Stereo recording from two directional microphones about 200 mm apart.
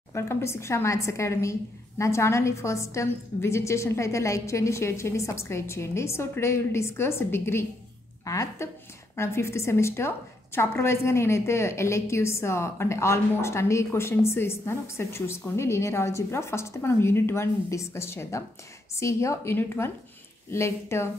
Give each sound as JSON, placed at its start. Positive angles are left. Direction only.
{"t": 0.1, "sound": "a woman's voice", "side_deg": 15}